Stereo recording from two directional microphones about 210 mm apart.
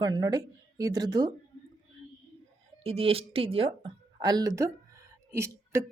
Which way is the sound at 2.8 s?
25° right (ahead or behind).